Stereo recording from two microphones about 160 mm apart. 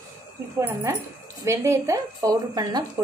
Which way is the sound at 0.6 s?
15° right (ahead or behind).